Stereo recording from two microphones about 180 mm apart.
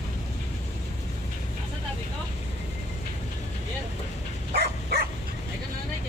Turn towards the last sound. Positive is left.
turn(degrees=-60)  # may be behind; listen again after turning